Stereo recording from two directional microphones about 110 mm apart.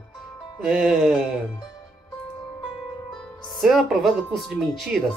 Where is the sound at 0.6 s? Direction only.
5° right (ahead or behind).